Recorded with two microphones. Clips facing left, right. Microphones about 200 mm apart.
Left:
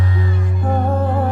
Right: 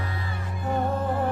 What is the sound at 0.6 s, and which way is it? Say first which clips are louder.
Music: left 6 dB; 60° left (ahead or behind).